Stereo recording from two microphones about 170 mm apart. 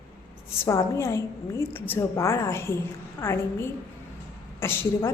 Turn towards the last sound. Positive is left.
turn(degrees=15)  # may be behind; listen again after turning